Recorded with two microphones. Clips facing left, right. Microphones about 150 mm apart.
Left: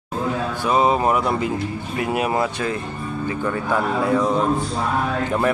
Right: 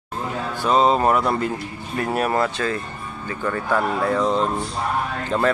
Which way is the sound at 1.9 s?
5° left (ahead or behind).